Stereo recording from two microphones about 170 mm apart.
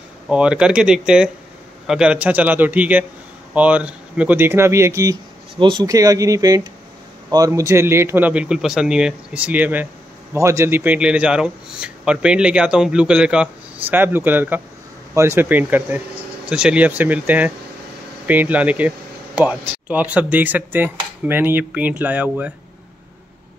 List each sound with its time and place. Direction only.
0.3 s a man's voice: 5° right (ahead or behind)
5.6 s a man's voice: 25° right (ahead or behind); by 22.5 s 10° right (ahead or behind)